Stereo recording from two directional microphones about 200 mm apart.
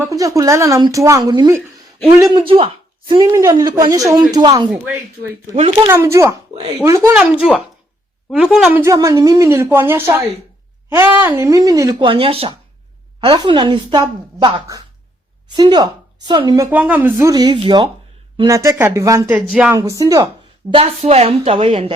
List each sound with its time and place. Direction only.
0.0 s speech: 15° right (ahead or behind)
4.9 s speech: 10° right (ahead or behind)
5.5 s speech: 30° right (ahead or behind)
5.9 s speech: 15° right (ahead or behind)
8.8 s speech: 15° right (ahead or behind)
19.8 s speech: 15° right (ahead or behind)
20.7 s speech: 30° right (ahead or behind)